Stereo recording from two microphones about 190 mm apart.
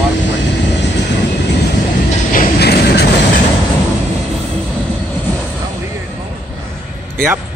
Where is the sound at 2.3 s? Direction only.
55° left (ahead or behind).